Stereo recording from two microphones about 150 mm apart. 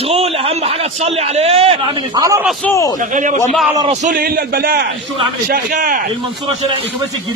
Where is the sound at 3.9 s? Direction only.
50° right (ahead or behind).